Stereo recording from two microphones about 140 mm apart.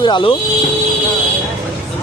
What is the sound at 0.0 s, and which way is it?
Speech, 35° left (ahead or behind).